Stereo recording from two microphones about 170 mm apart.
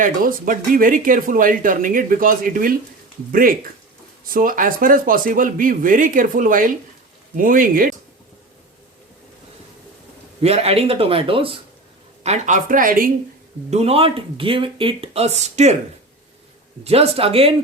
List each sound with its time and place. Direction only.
0.0 s speech: 55° right (ahead or behind)
10.4 s speech: 35° right (ahead or behind)
12.2 s speech: 45° right (ahead or behind)
13.7 s speech: 40° right (ahead or behind)
16.8 s speech: 35° right (ahead or behind)